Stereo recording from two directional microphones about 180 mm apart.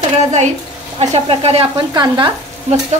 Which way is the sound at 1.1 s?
35° right (ahead or behind).